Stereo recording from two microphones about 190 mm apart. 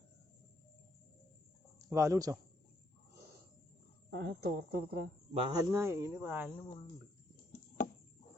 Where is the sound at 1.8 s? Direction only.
15° right (ahead or behind).